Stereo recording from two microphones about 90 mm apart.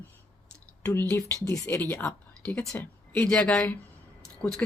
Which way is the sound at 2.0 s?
5° left (ahead or behind).